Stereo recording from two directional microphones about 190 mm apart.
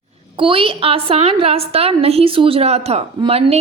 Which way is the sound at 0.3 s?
25° right (ahead or behind).